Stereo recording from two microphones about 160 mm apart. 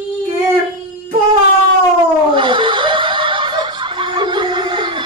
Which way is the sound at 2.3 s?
30° right (ahead or behind).